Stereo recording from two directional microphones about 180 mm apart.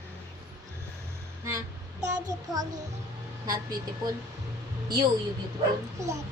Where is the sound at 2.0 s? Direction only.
20° right (ahead or behind).